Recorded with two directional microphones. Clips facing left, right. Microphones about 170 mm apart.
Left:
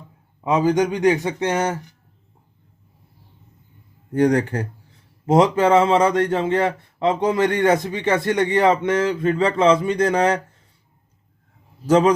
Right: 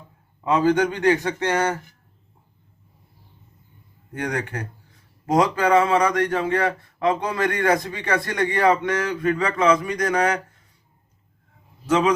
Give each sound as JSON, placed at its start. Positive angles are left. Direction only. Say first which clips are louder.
{"t": 0.4, "sound": "speech", "louder": "left 1 dB", "side_deg": 15}
{"t": 4.1, "sound": "speech", "louder": "left 10 dB", "side_deg": 30}
{"t": 11.9, "sound": "a man's voice", "louder": "left 4 dB", "side_deg": 35}